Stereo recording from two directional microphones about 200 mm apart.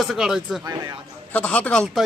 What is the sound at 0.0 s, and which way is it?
Speech, centre (ahead or behind).